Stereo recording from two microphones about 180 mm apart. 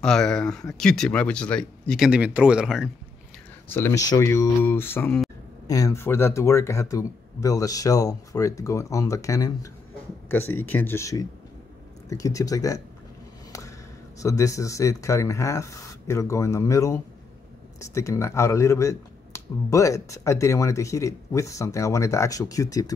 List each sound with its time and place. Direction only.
0.0 s speech: 5° left (ahead or behind)
3.6 s speech: 15° left (ahead or behind)
14.2 s speech: 20° left (ahead or behind)